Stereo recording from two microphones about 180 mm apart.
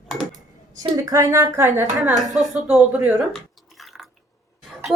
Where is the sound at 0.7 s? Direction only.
20° right (ahead or behind).